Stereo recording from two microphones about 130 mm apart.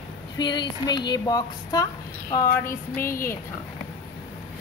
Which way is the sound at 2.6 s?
20° left (ahead or behind).